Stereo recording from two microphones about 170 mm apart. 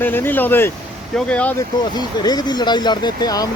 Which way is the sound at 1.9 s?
25° left (ahead or behind).